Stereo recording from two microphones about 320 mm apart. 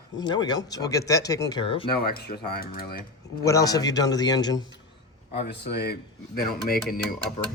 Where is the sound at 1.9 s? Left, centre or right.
Left.